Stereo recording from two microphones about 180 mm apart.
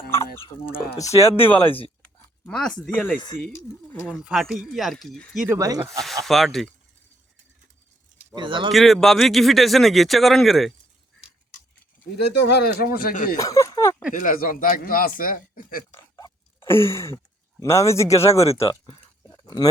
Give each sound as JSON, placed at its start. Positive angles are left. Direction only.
{"t": 0.7, "sound": "speech", "side_deg": 55}
{"t": 1.0, "sound": "speech", "side_deg": 35}
{"t": 2.5, "sound": "speech", "side_deg": 5}
{"t": 4.1, "sound": "speech", "side_deg": 0}
{"t": 5.5, "sound": "speech", "side_deg": -20}
{"t": 6.2, "sound": "speech", "side_deg": 0}
{"t": 8.4, "sound": "speech", "side_deg": -25}
{"t": 8.7, "sound": "speech", "side_deg": 0}
{"t": 12.1, "sound": "speech", "side_deg": 70}
{"t": 13.3, "sound": "speech", "side_deg": 20}
{"t": 14.1, "sound": "speech", "side_deg": 45}
{"t": 16.0, "sound": "chewing", "side_deg": 15}
{"t": 17.6, "sound": "speech", "side_deg": 15}
{"t": 18.6, "sound": "speech", "side_deg": 25}